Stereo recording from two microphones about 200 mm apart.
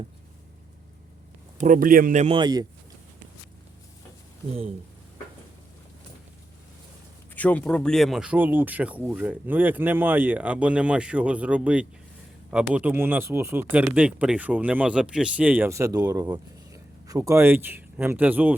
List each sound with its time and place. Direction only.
1.5 s speech: 40° right (ahead or behind); by 2.6 s 20° right (ahead or behind)
7.3 s speech: 5° left (ahead or behind); by 18.5 s 10° right (ahead or behind)